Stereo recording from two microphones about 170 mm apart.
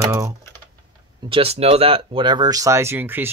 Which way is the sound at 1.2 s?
35° right (ahead or behind).